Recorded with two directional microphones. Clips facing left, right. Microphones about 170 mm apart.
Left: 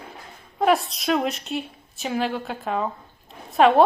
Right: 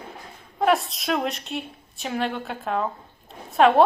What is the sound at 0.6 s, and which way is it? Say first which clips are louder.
A woman's voice: left 1 dB; centre (ahead or behind).